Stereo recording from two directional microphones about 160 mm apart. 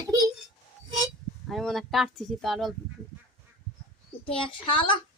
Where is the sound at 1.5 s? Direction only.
Centre (ahead or behind).